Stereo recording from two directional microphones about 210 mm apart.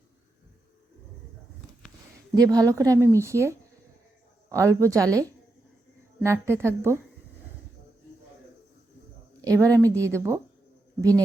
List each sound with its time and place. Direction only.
2.3 s a woman's voice: 15° right (ahead or behind)
6.2 s a woman's voice: 10° right (ahead or behind)
9.4 s a woman's voice: 15° right (ahead or behind)